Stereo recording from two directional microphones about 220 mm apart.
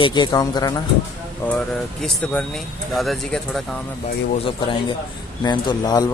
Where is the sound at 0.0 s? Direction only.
20° left (ahead or behind).